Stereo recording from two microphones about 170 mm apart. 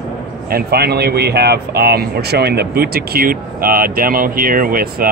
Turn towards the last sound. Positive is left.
turn(degrees=-55)  # may be behind; listen again after turning